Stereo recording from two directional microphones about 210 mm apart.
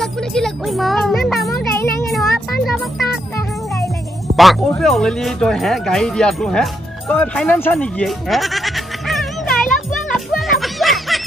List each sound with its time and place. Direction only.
0.0 s speech: centre (ahead or behind)
2.1 s music: centre (ahead or behind)
4.4 s speech: centre (ahead or behind)
10.1 s music: centre (ahead or behind)